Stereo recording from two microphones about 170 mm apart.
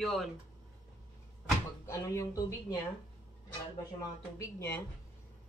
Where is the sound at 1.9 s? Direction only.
20° left (ahead or behind).